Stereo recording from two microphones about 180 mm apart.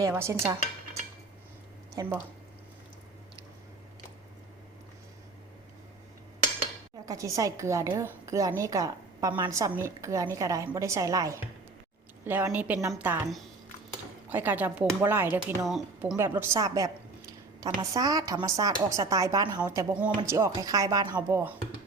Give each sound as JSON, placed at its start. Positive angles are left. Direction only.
{"t": 0.0, "sound": "speech", "side_deg": -15}
{"t": 2.0, "sound": "speech", "side_deg": -10}
{"t": 7.0, "sound": "speech", "side_deg": -20}
{"t": 14.3, "sound": "speech", "side_deg": -10}
{"t": 15.6, "sound": "speech", "side_deg": 0}
{"t": 16.1, "sound": "a woman's voice", "side_deg": -15}